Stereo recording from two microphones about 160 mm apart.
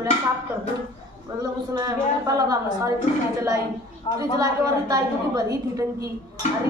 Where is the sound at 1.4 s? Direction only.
25° right (ahead or behind).